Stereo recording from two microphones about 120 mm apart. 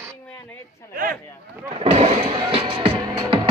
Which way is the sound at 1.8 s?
55° right (ahead or behind).